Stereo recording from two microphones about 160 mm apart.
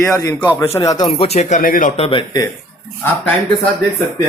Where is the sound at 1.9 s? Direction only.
40° left (ahead or behind).